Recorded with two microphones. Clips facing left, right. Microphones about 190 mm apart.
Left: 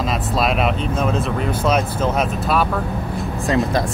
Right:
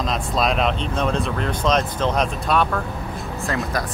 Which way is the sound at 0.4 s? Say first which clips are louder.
Left 1 dB; 5° left (ahead or behind).